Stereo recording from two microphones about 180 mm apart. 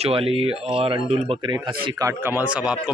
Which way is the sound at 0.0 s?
30° right (ahead or behind).